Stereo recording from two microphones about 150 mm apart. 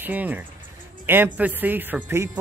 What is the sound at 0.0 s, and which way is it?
Speech, 10° right (ahead or behind).